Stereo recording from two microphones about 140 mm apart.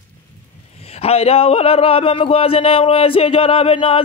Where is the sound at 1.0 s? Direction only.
45° left (ahead or behind).